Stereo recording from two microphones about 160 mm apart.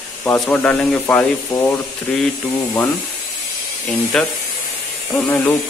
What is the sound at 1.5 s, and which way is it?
Frying, 25° left (ahead or behind).